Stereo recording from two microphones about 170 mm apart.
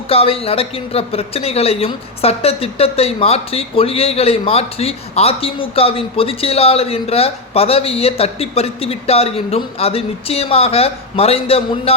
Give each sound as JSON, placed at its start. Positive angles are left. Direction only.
{"t": 0.1, "sound": "speech", "side_deg": 35}